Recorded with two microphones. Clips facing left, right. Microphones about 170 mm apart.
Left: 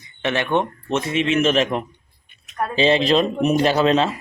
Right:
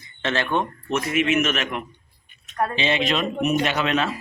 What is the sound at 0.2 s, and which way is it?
A man's voice, 15° left (ahead or behind).